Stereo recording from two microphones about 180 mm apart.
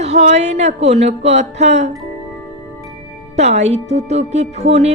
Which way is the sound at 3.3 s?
35° right (ahead or behind).